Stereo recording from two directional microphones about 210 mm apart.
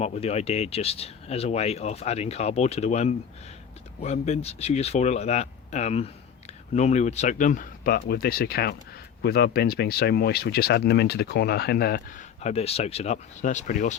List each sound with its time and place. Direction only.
0.0 s speech: 30° left (ahead or behind); by 12.2 s 50° left (ahead or behind)
12.4 s speech: 30° left (ahead or behind)